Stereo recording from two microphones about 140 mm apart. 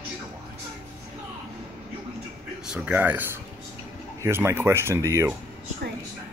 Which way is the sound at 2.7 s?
10° right (ahead or behind).